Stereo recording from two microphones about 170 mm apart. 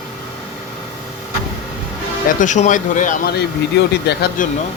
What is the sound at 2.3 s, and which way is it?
Speech, 50° left (ahead or behind).